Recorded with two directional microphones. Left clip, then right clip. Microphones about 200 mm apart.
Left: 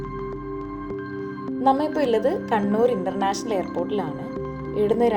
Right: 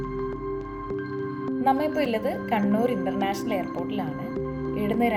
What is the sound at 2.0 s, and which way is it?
Speech, 45° left (ahead or behind).